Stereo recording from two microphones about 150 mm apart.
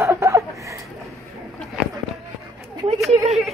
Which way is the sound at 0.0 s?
15° right (ahead or behind).